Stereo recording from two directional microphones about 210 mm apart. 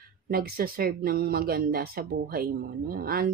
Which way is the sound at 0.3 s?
45° right (ahead or behind).